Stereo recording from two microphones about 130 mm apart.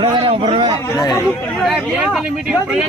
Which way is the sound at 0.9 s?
30° left (ahead or behind).